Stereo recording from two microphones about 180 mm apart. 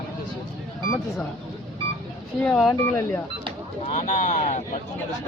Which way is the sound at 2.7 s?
15° left (ahead or behind).